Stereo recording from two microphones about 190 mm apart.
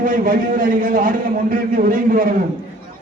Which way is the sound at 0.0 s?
45° right (ahead or behind).